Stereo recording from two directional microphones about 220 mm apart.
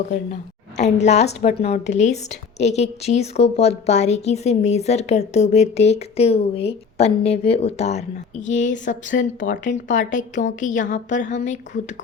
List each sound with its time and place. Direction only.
0.8 s a woman's voice: 30° left (ahead or behind)
8.9 s a woman's voice: 45° left (ahead or behind)
9.4 s a woman's voice: 35° left (ahead or behind)